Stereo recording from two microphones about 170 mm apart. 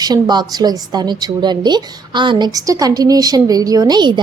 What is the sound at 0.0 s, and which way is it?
A woman's voice, 25° right (ahead or behind).